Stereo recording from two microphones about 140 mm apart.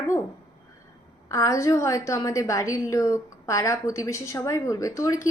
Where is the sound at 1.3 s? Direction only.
20° left (ahead or behind).